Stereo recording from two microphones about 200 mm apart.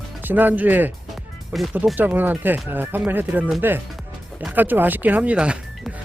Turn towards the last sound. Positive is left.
turn(degrees=-5)  # may be behind; listen again after turning